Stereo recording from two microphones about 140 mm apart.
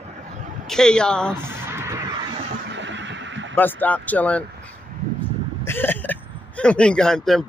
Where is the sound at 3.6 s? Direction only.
15° left (ahead or behind).